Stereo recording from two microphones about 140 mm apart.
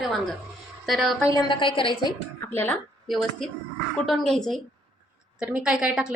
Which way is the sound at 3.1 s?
Centre (ahead or behind).